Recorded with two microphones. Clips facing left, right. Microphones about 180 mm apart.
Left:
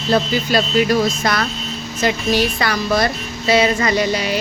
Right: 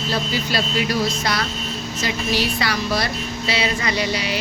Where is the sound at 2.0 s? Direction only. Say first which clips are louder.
Left 6 dB; 50° left (ahead or behind).